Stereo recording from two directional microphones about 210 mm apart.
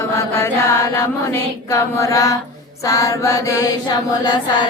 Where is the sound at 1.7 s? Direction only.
15° left (ahead or behind).